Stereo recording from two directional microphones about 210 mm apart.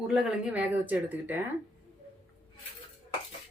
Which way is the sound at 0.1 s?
5° right (ahead or behind).